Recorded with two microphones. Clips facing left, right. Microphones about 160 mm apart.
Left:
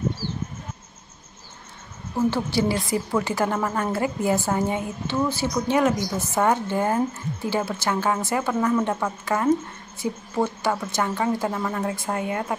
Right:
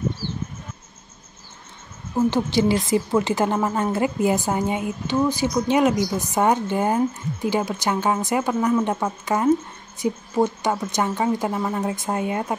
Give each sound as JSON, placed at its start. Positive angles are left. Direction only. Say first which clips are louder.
{"t": 2.3, "sound": "a woman's voice", "louder": "right 3 dB", "side_deg": -20}